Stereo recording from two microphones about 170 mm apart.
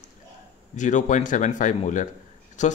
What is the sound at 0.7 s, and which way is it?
Speech, 45° left (ahead or behind).